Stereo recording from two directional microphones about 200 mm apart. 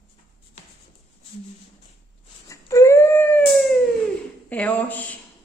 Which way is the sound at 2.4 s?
15° left (ahead or behind).